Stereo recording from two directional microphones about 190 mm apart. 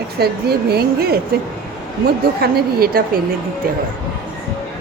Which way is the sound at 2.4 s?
55° right (ahead or behind).